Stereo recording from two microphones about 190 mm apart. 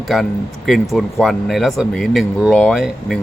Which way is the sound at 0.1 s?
Centre (ahead or behind).